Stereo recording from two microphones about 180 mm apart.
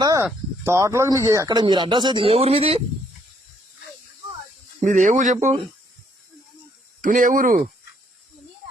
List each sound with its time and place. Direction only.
0.0 s a sound: 20° right (ahead or behind)
0.6 s speech: 15° right (ahead or behind); by 2.8 s 35° right (ahead or behind)
4.8 s speech: 45° right (ahead or behind)
7.0 s speech: 45° right (ahead or behind)